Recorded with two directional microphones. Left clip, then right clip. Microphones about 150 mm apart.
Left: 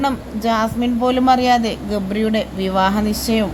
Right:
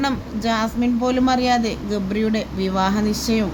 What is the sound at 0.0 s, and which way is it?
Speech, 15° left (ahead or behind).